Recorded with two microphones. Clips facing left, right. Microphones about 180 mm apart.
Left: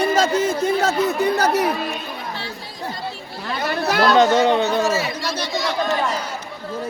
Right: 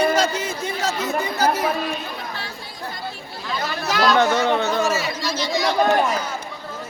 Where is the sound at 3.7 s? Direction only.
55° left (ahead or behind).